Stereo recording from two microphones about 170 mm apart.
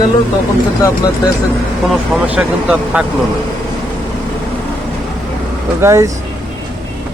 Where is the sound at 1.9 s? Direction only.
5° right (ahead or behind).